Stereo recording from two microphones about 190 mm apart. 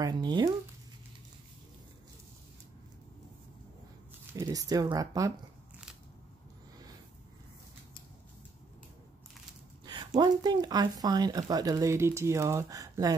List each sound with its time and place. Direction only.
0.0 s speech: 25° right (ahead or behind)
4.3 s speech: 15° right (ahead or behind)
9.8 s speech: 25° right (ahead or behind)